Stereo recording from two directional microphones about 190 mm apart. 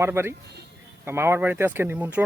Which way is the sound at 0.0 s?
15° right (ahead or behind).